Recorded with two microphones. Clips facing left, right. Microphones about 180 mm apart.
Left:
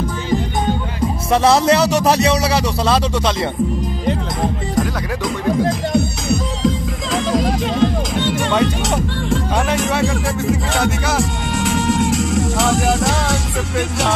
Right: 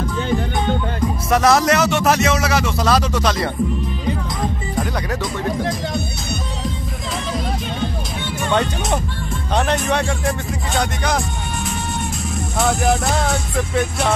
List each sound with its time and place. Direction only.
1.3 s speech: 30° left (ahead or behind)
7.3 s music: 90° left
9.7 s speech: 5° left (ahead or behind)
11.6 s speech: 90° left